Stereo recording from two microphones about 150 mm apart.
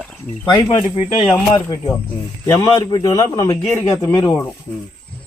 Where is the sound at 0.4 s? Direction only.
35° left (ahead or behind).